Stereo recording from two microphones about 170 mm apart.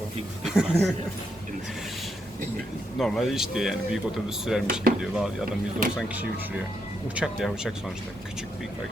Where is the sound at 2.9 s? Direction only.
Centre (ahead or behind).